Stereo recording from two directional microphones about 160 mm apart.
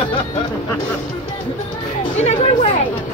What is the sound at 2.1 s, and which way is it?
Speech, 45° left (ahead or behind).